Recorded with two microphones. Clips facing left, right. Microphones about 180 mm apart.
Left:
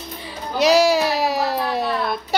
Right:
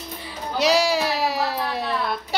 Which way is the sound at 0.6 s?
45° left (ahead or behind).